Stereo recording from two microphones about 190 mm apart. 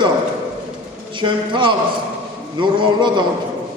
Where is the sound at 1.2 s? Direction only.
25° right (ahead or behind).